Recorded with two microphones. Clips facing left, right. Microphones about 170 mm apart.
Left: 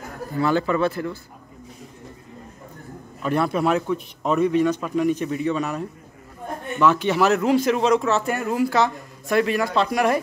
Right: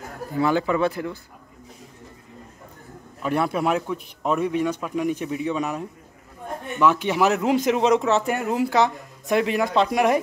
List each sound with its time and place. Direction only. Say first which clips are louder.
0.4 s speech: even; 15° right (ahead or behind)
3.2 s speech: left 1 dB; 10° right (ahead or behind)